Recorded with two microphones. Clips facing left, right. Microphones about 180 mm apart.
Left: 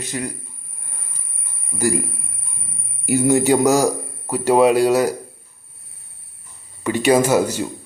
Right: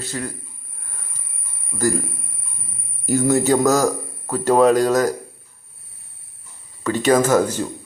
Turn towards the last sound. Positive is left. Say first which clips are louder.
# even
turn(degrees=10)  # may be behind; listen again after turning